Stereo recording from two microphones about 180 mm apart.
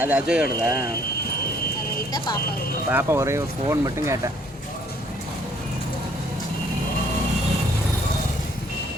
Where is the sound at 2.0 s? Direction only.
20° left (ahead or behind).